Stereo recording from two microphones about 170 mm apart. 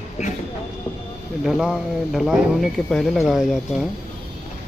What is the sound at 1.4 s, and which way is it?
Speech, centre (ahead or behind).